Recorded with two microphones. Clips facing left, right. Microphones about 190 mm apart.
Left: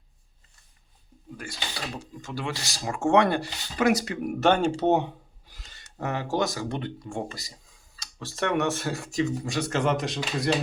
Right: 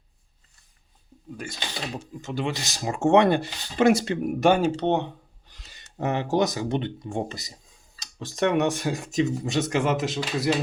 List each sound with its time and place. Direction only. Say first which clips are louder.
1.4 s speech: right 2 dB; 20° right (ahead or behind)
4.4 s speech: right 2 dB; 10° right (ahead or behind)
4.8 s speech: left 1 dB; 10° left (ahead or behind)
5.7 s speech: right 4 dB; 20° right (ahead or behind)
9.7 s speech: left 1 dB; 5° right (ahead or behind)